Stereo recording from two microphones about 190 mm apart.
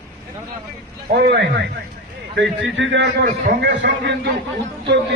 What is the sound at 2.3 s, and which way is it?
Speech, 75° right (ahead or behind).